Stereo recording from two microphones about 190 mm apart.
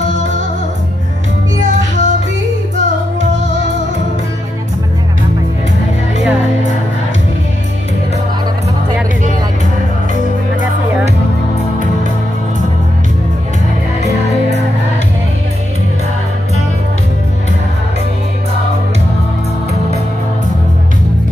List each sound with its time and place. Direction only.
1.6 s music: 40° right (ahead or behind)